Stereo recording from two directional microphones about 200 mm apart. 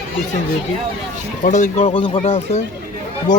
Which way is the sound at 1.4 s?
40° left (ahead or behind).